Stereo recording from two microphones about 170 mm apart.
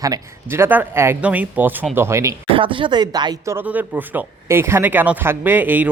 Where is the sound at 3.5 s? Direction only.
10° right (ahead or behind).